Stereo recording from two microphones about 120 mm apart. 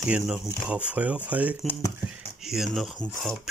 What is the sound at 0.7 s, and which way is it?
Speech, 10° right (ahead or behind).